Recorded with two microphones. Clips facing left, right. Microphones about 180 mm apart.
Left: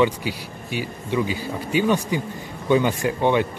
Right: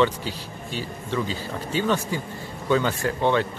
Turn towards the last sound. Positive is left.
turn(degrees=15)  # may be behind; listen again after turning